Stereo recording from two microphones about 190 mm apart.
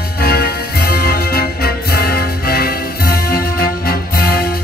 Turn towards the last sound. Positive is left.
turn(degrees=55)  # may be behind; listen again after turning